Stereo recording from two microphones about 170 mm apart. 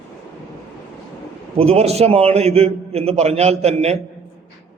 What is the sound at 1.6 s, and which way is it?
A man's voice, 35° right (ahead or behind).